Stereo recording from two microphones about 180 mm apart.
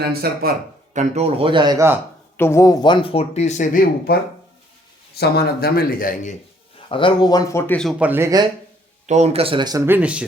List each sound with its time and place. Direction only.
0.1 s speech: 60° right (ahead or behind)
0.9 s speech: 35° right (ahead or behind)
2.4 s speech: 15° left (ahead or behind); by 6.3 s 50° left (ahead or behind)
6.8 s speech: 30° left (ahead or behind)
7.8 s speech: 5° right (ahead or behind)
9.0 s speech: 40° right (ahead or behind); by 10.2 s 5° right (ahead or behind)